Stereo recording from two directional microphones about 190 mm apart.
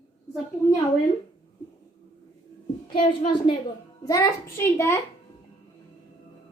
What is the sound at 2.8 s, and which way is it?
A woman's voice, 25° left (ahead or behind).